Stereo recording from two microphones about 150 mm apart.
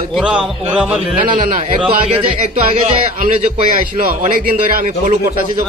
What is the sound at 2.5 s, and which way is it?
Speech, 40° right (ahead or behind).